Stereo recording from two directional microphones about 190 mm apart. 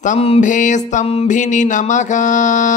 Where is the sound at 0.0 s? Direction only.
35° left (ahead or behind).